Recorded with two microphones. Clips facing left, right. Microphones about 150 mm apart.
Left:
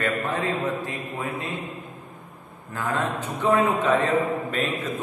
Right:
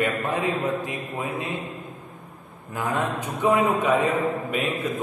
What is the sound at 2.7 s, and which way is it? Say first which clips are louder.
A man's voice: right 1 dB; 15° right (ahead or behind).